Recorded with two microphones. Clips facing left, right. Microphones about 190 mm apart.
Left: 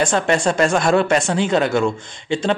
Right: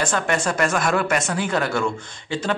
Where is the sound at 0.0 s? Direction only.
30° left (ahead or behind).